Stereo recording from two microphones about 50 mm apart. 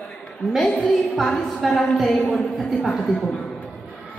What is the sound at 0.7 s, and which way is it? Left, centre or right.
Speech, centre.